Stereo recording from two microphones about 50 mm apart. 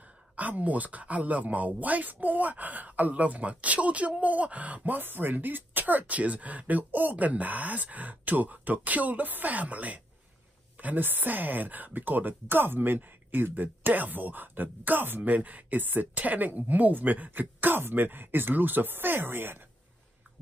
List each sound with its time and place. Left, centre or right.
0.0 s speech: right